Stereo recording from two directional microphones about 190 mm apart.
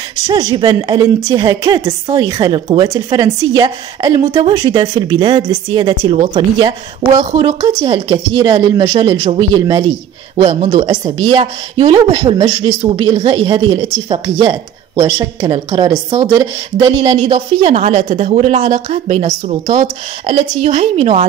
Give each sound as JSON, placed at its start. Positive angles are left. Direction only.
{"t": 0.3, "sound": "speech", "side_deg": -20}
{"t": 7.1, "sound": "a woman's voice", "side_deg": -35}
{"t": 10.3, "sound": "speech", "side_deg": -35}
{"t": 14.4, "sound": "speech", "side_deg": -20}
{"t": 17.2, "sound": "a woman's voice", "side_deg": -35}